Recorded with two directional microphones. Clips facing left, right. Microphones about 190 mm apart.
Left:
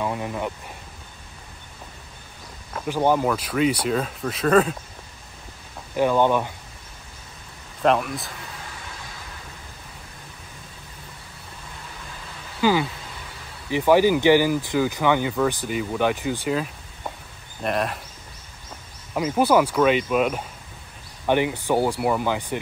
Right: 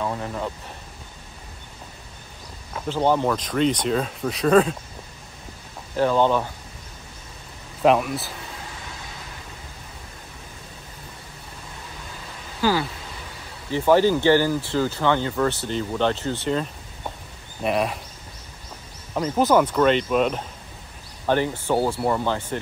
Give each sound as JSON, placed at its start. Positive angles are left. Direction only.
{"t": 0.0, "sound": "speech", "side_deg": 10}
{"t": 2.9, "sound": "speech", "side_deg": 10}
{"t": 5.9, "sound": "speech", "side_deg": 15}
{"t": 7.8, "sound": "speech", "side_deg": -5}
{"t": 12.6, "sound": "a sound", "side_deg": 15}
{"t": 13.7, "sound": "speech", "side_deg": 15}
{"t": 19.1, "sound": "speech", "side_deg": 10}